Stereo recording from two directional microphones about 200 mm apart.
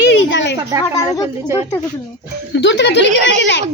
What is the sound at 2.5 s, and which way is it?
Speech, 60° left (ahead or behind).